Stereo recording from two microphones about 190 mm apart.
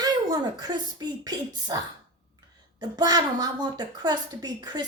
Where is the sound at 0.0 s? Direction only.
20° right (ahead or behind).